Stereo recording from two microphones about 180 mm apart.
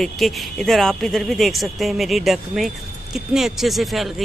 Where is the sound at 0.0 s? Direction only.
Centre (ahead or behind).